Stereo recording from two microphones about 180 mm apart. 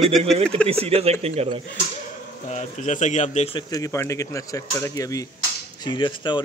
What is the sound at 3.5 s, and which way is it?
Speech, 20° left (ahead or behind).